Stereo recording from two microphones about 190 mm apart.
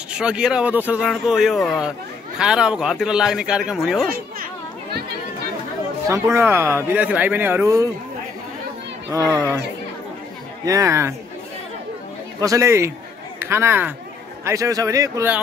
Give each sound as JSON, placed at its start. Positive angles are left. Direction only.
{"t": 0.1, "sound": "speech", "side_deg": -5}
{"t": 6.0, "sound": "a man's voice", "side_deg": -15}
{"t": 9.1, "sound": "a man's voice", "side_deg": -20}
{"t": 10.6, "sound": "a man's voice", "side_deg": -15}
{"t": 12.4, "sound": "a man's voice", "side_deg": -15}